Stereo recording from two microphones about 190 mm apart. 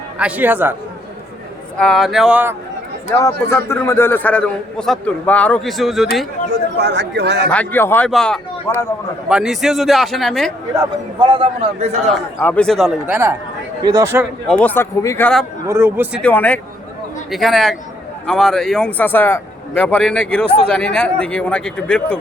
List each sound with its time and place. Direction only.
0.2 s speech: 10° right (ahead or behind)
1.8 s a man's voice: centre (ahead or behind)
3.2 s a man's voice: 15° left (ahead or behind)
6.7 s speech: 65° right (ahead or behind)
7.5 s a man's voice: 10° left (ahead or behind)
10.8 s a man's voice: 25° right (ahead or behind)
12.1 s a man's voice: 5° left (ahead or behind); by 14.3 s 15° right (ahead or behind)
14.4 s a man's voice: 5° left (ahead or behind)
15.6 s speech: 15° right (ahead or behind)
16.2 s a man's voice: 5° left (ahead or behind)